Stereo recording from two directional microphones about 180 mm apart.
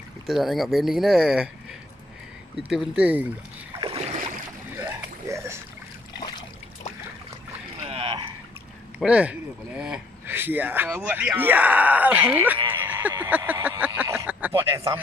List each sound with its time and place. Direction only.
0.3 s speech: centre (ahead or behind)
2.7 s speech: 5° right (ahead or behind)
3.8 s boat: 35° right (ahead or behind)
4.7 s a sound: 15° right (ahead or behind)
6.1 s a sound: 20° left (ahead or behind)
7.9 s rowboat: 30° right (ahead or behind)
9.0 s speech: 5° right (ahead or behind)
12.6 s a sound: 10° right (ahead or behind)
14.7 s speech: 15° right (ahead or behind)